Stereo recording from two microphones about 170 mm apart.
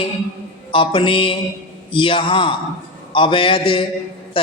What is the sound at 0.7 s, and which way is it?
A man's voice, 30° left (ahead or behind).